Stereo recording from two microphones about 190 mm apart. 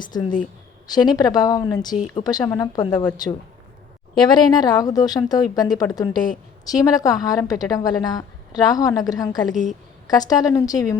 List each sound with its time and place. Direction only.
0.0 s a woman's voice: 25° left (ahead or behind)
4.2 s a woman's voice: 20° left (ahead or behind)